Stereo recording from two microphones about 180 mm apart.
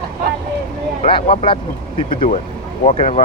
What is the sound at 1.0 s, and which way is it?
Speech, 30° left (ahead or behind).